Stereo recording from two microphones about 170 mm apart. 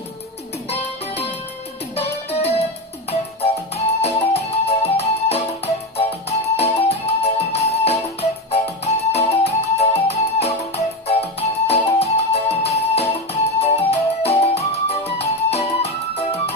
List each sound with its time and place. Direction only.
0.7 s music: 35° left (ahead or behind)